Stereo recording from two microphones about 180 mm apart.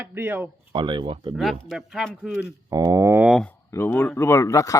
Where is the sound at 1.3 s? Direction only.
Centre (ahead or behind).